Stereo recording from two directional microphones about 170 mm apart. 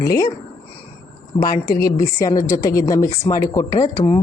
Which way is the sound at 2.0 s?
20° left (ahead or behind).